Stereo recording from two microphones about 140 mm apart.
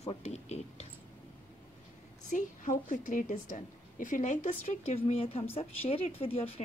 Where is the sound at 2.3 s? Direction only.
65° left (ahead or behind).